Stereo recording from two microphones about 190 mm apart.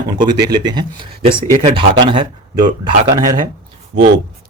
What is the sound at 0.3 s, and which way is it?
Speech, 20° right (ahead or behind).